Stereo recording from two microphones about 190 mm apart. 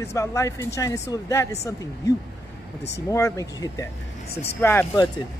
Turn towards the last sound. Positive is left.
turn(degrees=10)  # may be behind; listen again after turning